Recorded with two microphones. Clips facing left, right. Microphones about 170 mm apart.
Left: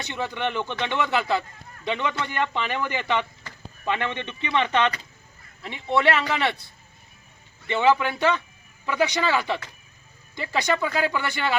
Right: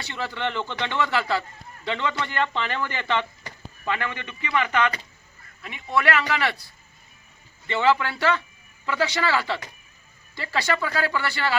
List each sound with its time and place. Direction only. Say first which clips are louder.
0.0 s speech: left 1 dB; 20° left (ahead or behind)
7.7 s speech: left 1 dB; 15° left (ahead or behind)